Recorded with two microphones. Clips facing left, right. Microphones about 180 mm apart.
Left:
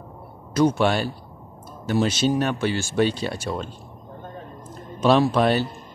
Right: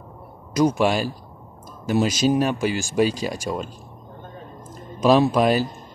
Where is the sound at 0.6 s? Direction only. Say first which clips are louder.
Even; 10° right (ahead or behind).